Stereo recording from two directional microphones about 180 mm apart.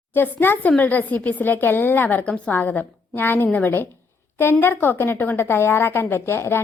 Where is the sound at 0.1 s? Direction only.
10° left (ahead or behind).